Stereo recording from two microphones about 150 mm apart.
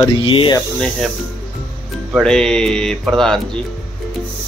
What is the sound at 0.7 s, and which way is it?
Speech, 5° left (ahead or behind).